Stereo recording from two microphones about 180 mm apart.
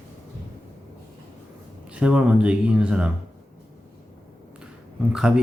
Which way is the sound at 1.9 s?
5° right (ahead or behind).